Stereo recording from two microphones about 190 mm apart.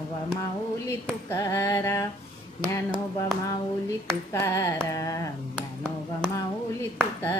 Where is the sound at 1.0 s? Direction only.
15° left (ahead or behind).